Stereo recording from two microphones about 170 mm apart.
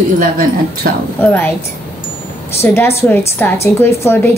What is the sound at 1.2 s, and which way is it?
Speech, 10° left (ahead or behind).